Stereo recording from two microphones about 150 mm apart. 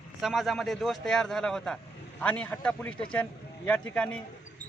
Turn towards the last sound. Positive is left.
turn(degrees=10)  # may be behind; listen again after turning